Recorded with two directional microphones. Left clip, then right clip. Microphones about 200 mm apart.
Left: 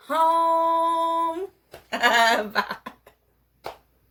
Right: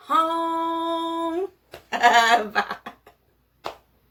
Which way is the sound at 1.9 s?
Centre (ahead or behind).